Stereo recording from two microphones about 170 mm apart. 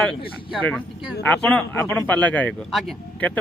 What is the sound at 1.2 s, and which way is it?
Speech, 10° left (ahead or behind).